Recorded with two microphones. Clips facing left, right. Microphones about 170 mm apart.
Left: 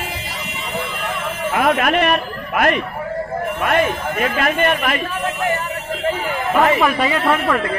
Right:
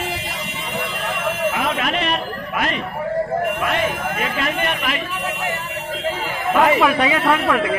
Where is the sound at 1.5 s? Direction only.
55° left (ahead or behind).